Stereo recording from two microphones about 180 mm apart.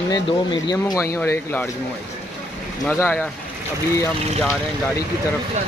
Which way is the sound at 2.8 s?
10° left (ahead or behind).